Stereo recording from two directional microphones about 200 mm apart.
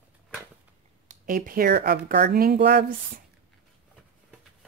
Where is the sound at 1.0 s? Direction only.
45° right (ahead or behind).